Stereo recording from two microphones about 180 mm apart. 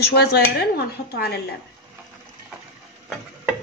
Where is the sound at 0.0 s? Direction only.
65° left (ahead or behind).